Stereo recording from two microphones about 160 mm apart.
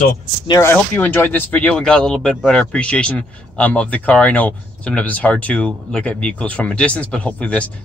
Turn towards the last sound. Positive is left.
turn(degrees=5)  # may be behind; listen again after turning